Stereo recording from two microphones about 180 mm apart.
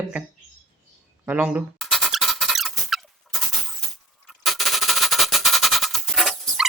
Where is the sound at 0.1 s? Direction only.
10° right (ahead or behind).